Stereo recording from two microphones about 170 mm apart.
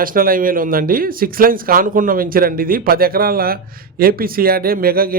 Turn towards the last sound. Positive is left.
turn(degrees=-60)  # may be behind; listen again after turning